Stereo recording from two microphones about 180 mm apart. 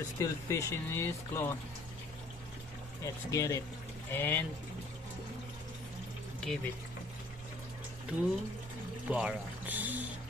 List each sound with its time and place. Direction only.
0.2 s speech: 15° left (ahead or behind)
3.0 s speech: 15° left (ahead or behind)
6.4 s speech: 5° left (ahead or behind)
8.1 s speech: 5° right (ahead or behind)